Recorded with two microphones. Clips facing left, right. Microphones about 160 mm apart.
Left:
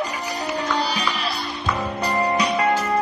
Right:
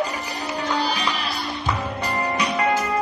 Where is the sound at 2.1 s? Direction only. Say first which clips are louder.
Left 4 dB; 35° left (ahead or behind).